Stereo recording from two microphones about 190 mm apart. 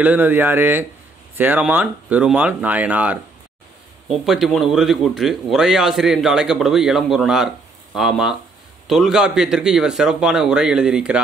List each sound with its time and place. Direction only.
0.0 s speech: 10° right (ahead or behind)